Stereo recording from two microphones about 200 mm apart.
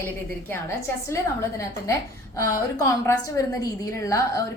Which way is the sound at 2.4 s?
15° left (ahead or behind).